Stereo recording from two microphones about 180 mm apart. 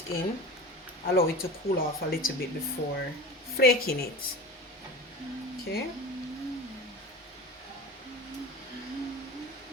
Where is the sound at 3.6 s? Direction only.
60° left (ahead or behind).